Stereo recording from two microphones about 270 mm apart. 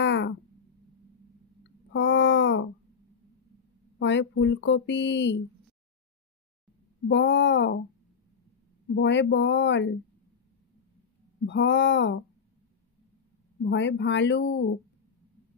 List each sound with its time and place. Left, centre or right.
0.0 s a sound: left
1.6 s a sound: left
4.0 s speech: left
7.1 s speech: left
8.9 s speech: left
11.4 s speech: left
13.6 s speech: left